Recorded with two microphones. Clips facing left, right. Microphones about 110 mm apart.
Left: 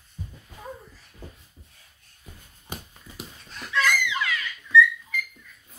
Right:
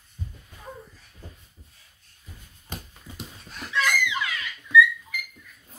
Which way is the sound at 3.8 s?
20° right (ahead or behind).